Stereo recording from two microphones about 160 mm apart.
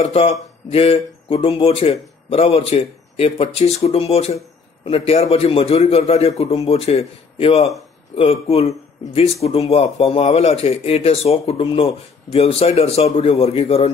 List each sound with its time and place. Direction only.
0.0 s speech: 35° left (ahead or behind)